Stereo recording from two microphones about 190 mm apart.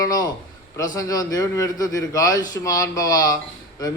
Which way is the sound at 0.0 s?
20° left (ahead or behind).